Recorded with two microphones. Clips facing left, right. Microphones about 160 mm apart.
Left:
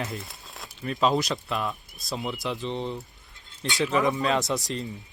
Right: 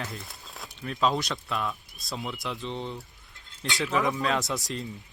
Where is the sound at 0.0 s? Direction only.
Centre (ahead or behind).